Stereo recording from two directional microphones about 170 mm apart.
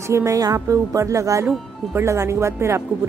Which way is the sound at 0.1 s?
20° right (ahead or behind).